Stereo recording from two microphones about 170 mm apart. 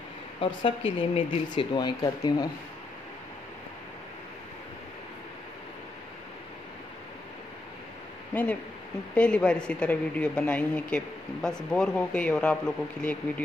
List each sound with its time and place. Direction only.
0.4 s speech: 30° left (ahead or behind)
9.1 s speech: 5° left (ahead or behind)